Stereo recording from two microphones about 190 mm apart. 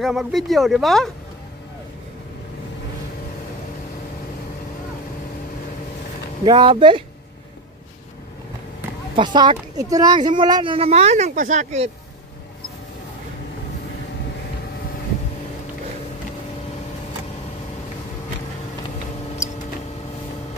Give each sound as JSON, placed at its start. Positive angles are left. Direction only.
{"t": 0.0, "sound": "speech", "side_deg": 0}
{"t": 6.4, "sound": "speech", "side_deg": -25}
{"t": 9.1, "sound": "speech", "side_deg": -25}